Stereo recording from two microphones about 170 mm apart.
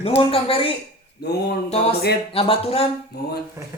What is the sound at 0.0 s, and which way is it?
Speech, 35° left (ahead or behind).